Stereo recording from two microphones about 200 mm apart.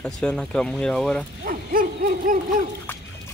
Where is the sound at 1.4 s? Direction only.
45° right (ahead or behind).